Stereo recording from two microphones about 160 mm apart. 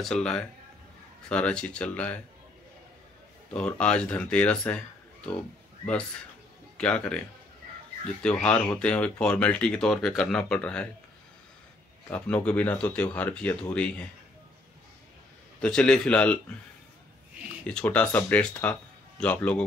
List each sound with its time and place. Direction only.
0.0 s speech: 5° left (ahead or behind)
3.5 s speech: 5° left (ahead or behind)
6.8 s speech: 5° left (ahead or behind)
12.4 s speech: 10° left (ahead or behind)
15.6 s speech: 5° left (ahead or behind)
17.6 s speech: 5° left (ahead or behind)